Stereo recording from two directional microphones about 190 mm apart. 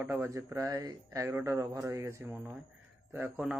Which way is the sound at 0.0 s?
15° right (ahead or behind).